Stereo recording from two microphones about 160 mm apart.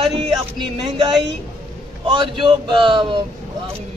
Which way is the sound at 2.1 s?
30° right (ahead or behind).